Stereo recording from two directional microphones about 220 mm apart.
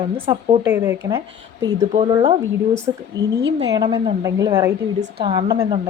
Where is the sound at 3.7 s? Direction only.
20° right (ahead or behind).